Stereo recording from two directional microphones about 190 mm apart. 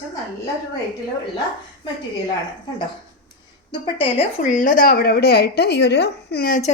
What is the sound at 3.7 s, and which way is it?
Speech, 25° left (ahead or behind).